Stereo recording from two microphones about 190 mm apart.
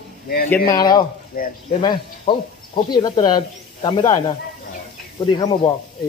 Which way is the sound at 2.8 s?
20° left (ahead or behind).